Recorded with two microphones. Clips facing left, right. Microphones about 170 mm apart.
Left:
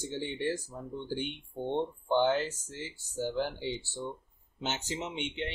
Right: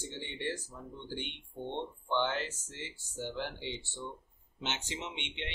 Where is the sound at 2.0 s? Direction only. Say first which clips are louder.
Left 6 dB; 40° left (ahead or behind).